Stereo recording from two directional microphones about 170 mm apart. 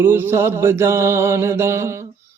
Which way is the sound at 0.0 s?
15° right (ahead or behind).